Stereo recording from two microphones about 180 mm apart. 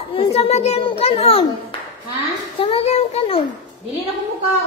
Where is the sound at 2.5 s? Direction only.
30° left (ahead or behind).